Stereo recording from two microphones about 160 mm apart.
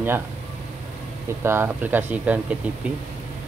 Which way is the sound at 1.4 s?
15° right (ahead or behind).